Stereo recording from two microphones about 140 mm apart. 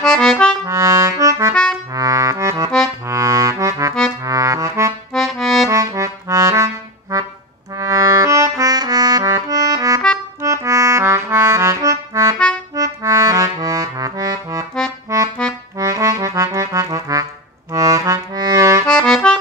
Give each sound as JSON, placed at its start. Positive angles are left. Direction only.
{"t": 0.0, "sound": "accordion", "side_deg": 5}
{"t": 0.7, "sound": "accordion", "side_deg": -20}
{"t": 1.5, "sound": "accordion", "side_deg": 5}
{"t": 2.0, "sound": "music", "side_deg": -25}
{"t": 4.2, "sound": "accordion", "side_deg": -25}
{"t": 5.1, "sound": "accordion", "side_deg": 5}
{"t": 5.7, "sound": "accordion", "side_deg": -25}
{"t": 7.7, "sound": "music", "side_deg": -25}
{"t": 12.7, "sound": "accordion", "side_deg": -25}
{"t": 15.8, "sound": "accordion", "side_deg": -25}
{"t": 17.7, "sound": "music", "side_deg": -25}
{"t": 18.9, "sound": "accordion", "side_deg": 5}